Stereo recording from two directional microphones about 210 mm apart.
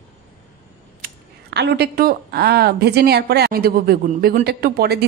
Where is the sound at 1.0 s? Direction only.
55° right (ahead or behind).